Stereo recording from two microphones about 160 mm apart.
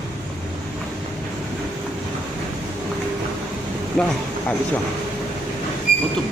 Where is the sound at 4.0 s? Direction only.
5° left (ahead or behind).